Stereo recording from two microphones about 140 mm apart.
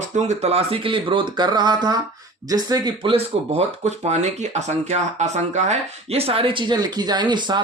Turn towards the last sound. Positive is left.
turn(degrees=-35)  # may be behind; listen again after turning